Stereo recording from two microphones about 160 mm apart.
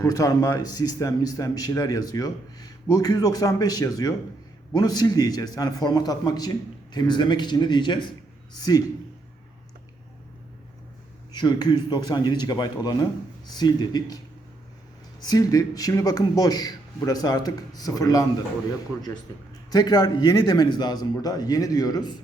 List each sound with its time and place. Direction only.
0.0 s a man's voice: 20° left (ahead or behind)
11.3 s a man's voice: 25° left (ahead or behind)
15.2 s a man's voice: 25° left (ahead or behind)
19.7 s a man's voice: 25° left (ahead or behind)